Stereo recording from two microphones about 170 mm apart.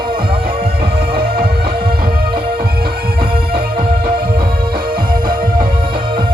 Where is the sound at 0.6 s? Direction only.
65° right (ahead or behind).